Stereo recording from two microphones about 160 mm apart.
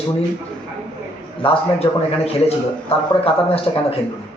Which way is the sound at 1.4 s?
40° left (ahead or behind).